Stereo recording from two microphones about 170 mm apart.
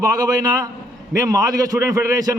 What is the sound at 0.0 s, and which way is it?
A man's voice, 20° right (ahead or behind).